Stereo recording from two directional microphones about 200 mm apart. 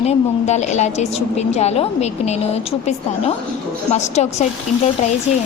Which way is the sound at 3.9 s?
35° left (ahead or behind).